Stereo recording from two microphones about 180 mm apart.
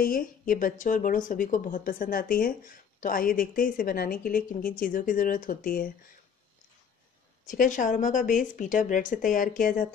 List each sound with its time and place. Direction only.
0.0 s speech: 50° left (ahead or behind)
7.4 s speech: 45° left (ahead or behind)